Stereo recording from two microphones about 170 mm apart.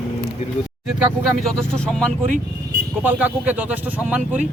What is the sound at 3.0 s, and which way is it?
Speech, 10° right (ahead or behind).